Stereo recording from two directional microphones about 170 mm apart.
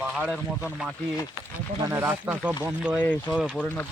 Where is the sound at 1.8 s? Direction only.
15° right (ahead or behind).